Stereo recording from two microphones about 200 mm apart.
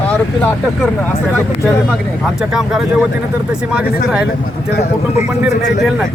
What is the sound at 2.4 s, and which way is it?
Speech, 5° right (ahead or behind).